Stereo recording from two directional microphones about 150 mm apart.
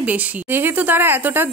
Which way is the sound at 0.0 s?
10° right (ahead or behind).